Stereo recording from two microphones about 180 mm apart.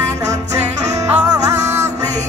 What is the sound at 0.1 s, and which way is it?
Music, 15° right (ahead or behind).